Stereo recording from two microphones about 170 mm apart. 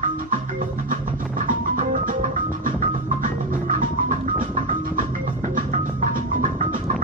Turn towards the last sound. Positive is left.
turn(degrees=-50)  # may be behind; listen again after turning